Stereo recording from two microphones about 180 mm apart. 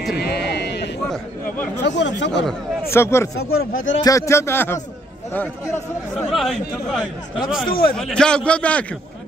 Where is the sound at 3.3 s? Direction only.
60° left (ahead or behind).